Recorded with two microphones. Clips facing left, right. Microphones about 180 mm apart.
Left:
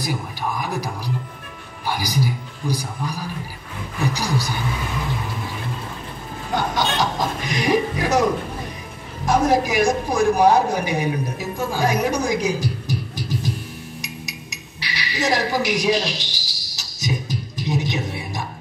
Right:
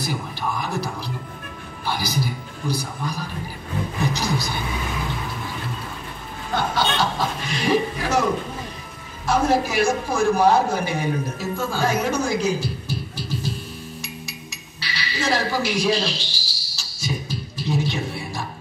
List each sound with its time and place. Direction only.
0.0 s music: 15° left (ahead or behind)
1.9 s a man's voice: 15° left (ahead or behind)
6.7 s chuckle: 15° left (ahead or behind)
9.2 s a man's voice: 15° left (ahead or behind)
14.0 s music: 15° left (ahead or behind)